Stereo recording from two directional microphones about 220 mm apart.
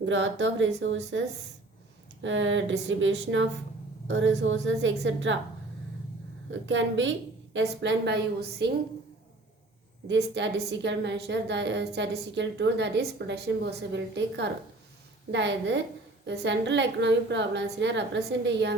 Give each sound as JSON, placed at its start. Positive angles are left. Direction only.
{"t": 0.0, "sound": "a woman's voice", "side_deg": -55}
{"t": 2.2, "sound": "a woman's voice", "side_deg": -60}
{"t": 6.5, "sound": "a woman's voice", "side_deg": -55}
{"t": 10.1, "sound": "a woman's voice", "side_deg": -55}